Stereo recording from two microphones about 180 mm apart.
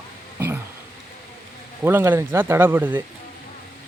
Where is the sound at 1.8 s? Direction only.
10° right (ahead or behind).